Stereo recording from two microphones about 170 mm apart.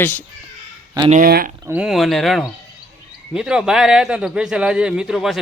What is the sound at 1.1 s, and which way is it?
Speech, 60° right (ahead or behind).